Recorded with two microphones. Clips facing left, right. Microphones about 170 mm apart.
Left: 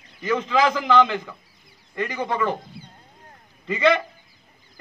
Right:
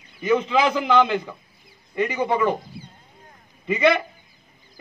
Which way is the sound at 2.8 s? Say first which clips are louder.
Right 2 dB; 25° right (ahead or behind).